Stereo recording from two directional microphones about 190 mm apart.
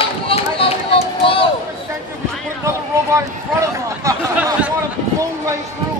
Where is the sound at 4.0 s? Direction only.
15° right (ahead or behind).